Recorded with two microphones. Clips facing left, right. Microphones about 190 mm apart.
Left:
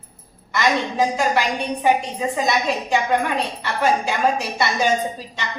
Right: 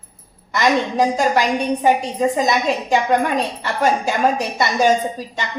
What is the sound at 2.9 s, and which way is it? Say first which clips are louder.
A woman's voice: right 3 dB; 45° right (ahead or behind).